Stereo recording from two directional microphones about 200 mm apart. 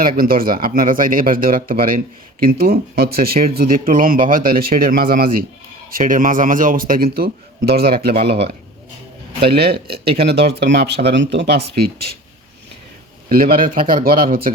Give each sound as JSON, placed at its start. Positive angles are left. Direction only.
{"t": 0.2, "sound": "speech", "side_deg": -45}
{"t": 13.2, "sound": "speech", "side_deg": -45}